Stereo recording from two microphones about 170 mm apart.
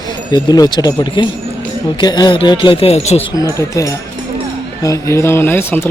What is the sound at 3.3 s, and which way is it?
Speech, 20° left (ahead or behind).